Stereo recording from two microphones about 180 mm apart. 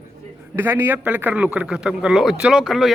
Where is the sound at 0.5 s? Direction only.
10° right (ahead or behind).